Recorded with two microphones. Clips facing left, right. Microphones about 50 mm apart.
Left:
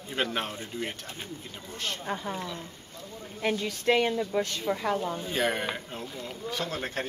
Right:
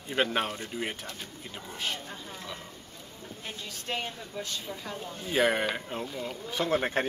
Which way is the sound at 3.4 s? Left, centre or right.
Left.